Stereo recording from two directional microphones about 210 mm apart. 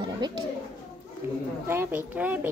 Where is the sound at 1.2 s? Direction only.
10° right (ahead or behind).